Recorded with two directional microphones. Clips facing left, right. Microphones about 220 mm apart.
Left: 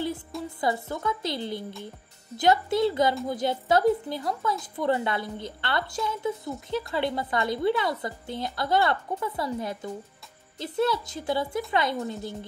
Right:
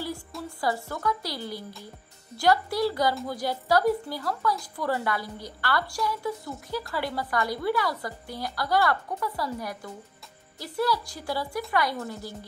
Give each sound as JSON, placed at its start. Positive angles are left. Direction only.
{"t": 0.6, "sound": "speech", "side_deg": 20}